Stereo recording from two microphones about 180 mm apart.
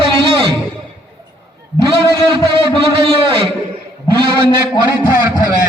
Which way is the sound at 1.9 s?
30° right (ahead or behind).